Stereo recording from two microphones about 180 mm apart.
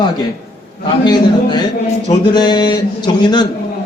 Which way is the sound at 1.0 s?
25° left (ahead or behind).